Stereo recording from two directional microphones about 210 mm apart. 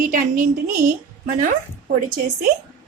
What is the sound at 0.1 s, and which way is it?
Speech, 40° right (ahead or behind).